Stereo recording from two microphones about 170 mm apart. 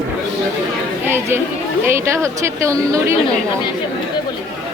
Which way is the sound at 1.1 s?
15° right (ahead or behind).